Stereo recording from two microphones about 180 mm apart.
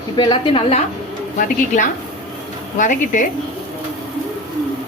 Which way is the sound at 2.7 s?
45° left (ahead or behind).